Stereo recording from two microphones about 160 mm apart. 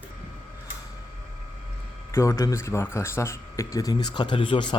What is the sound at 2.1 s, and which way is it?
Speech, 20° left (ahead or behind).